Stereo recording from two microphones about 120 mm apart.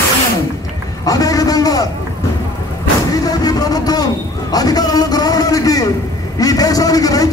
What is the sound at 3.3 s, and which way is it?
A man's voice, 30° left (ahead or behind).